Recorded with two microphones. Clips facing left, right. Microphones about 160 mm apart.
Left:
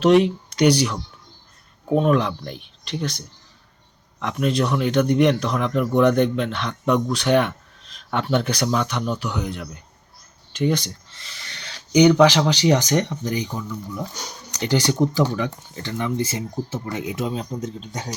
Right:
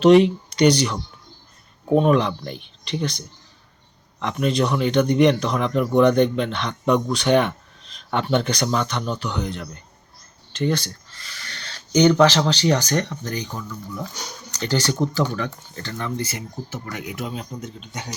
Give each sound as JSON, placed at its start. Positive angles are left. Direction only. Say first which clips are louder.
{"t": 0.0, "sound": "speech", "louder": "right 2 dB", "side_deg": 0}
{"t": 10.5, "sound": "a sound", "louder": "left 1 dB", "side_deg": 15}
{"t": 12.5, "sound": "speech", "louder": "left 2 dB", "side_deg": 15}